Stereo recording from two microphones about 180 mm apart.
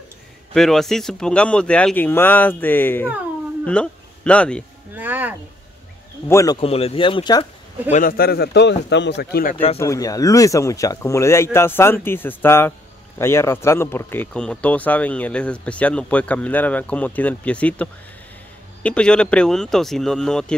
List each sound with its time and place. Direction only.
0.6 s speech: centre (ahead or behind)
4.9 s speech: 10° right (ahead or behind)
6.2 s speech: 20° left (ahead or behind)
6.6 s speech: 35° left (ahead or behind)
7.9 s speech: 50° left (ahead or behind)
9.8 s speech: 20° left (ahead or behind)